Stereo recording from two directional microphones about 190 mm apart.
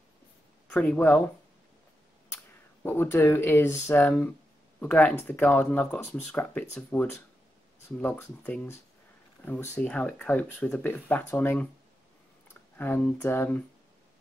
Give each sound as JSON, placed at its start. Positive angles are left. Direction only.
{"t": 0.7, "sound": "speech", "side_deg": 5}
{"t": 2.3, "sound": "speech", "side_deg": 10}
{"t": 12.7, "sound": "speech", "side_deg": 10}